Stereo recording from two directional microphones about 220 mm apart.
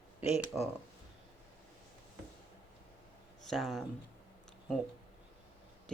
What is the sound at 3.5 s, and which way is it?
Speech, centre (ahead or behind).